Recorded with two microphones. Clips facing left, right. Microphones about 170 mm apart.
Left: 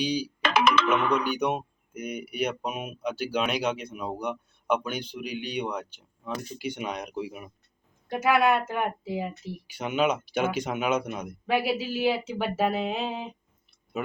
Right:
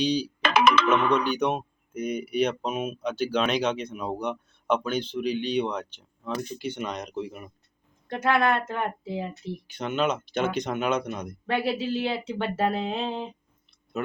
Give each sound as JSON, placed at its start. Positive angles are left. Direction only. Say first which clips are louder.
{"t": 0.0, "sound": "speech", "louder": "right 3 dB", "side_deg": 10}
{"t": 0.4, "sound": "ringtone", "louder": "right 2 dB", "side_deg": -60}
{"t": 1.1, "sound": "speech", "louder": "right 2 dB", "side_deg": 10}
{"t": 13.9, "sound": "a sound", "louder": "right 2 dB", "side_deg": 10}